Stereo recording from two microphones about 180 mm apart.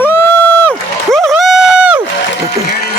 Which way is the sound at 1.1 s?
Centre (ahead or behind).